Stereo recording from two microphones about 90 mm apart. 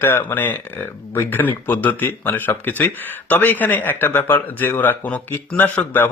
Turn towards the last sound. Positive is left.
turn(degrees=20)  # may be behind; listen again after turning